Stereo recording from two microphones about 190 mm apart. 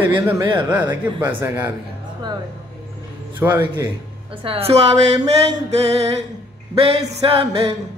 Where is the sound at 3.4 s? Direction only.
10° right (ahead or behind).